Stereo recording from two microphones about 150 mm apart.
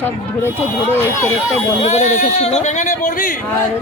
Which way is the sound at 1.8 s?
50° left (ahead or behind).